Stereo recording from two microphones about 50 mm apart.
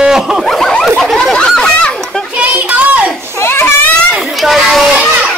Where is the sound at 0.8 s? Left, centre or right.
Centre.